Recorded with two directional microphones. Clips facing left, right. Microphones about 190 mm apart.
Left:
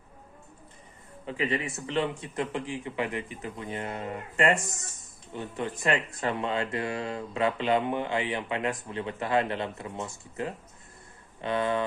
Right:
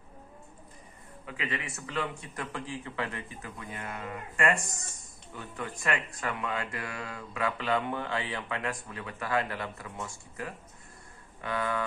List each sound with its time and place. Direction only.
1.2 s speech: 30° left (ahead or behind)